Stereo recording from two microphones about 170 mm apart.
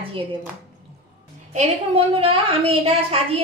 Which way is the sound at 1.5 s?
40° right (ahead or behind).